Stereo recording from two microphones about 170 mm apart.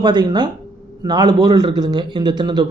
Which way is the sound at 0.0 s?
25° right (ahead or behind).